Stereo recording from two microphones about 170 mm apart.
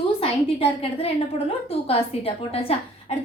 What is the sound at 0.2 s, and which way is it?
A woman's voice, 35° left (ahead or behind).